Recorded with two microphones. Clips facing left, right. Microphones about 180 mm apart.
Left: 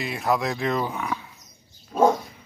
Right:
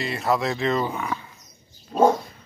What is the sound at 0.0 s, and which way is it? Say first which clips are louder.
Speech: right 1 dB; centre (ahead or behind).